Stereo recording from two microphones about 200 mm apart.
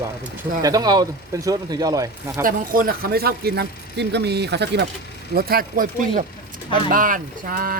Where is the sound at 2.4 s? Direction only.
45° right (ahead or behind).